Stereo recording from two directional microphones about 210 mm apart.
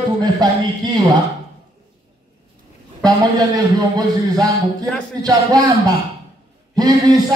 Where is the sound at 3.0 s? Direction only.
20° right (ahead or behind).